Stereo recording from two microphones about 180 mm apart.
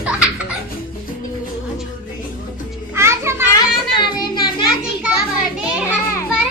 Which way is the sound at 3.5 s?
25° left (ahead or behind).